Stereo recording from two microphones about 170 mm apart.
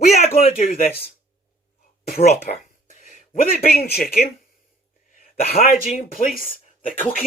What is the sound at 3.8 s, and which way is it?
Speech, 65° left (ahead or behind).